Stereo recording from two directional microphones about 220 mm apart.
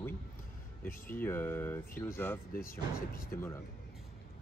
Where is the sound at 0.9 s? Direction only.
40° left (ahead or behind).